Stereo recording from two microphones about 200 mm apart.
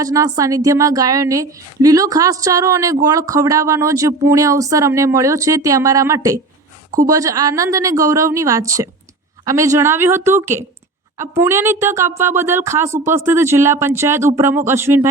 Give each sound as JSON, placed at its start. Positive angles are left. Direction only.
{"t": 0.0, "sound": "a woman's voice", "side_deg": -15}